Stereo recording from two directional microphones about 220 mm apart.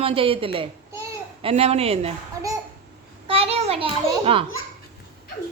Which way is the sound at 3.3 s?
25° right (ahead or behind).